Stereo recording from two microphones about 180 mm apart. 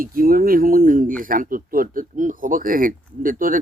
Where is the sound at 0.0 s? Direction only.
55° right (ahead or behind).